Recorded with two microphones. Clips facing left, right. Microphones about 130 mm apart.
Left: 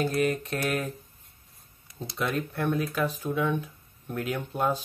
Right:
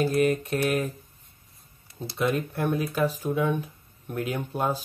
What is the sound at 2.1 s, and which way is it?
Speech, 10° right (ahead or behind).